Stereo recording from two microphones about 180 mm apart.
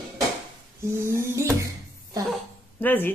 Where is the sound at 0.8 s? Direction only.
15° right (ahead or behind).